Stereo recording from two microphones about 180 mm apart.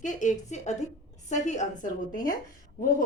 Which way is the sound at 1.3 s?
40° left (ahead or behind).